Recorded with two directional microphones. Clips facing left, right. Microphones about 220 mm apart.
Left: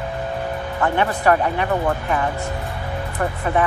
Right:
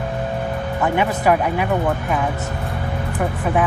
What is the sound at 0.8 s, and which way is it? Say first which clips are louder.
Speech: even; 10° right (ahead or behind).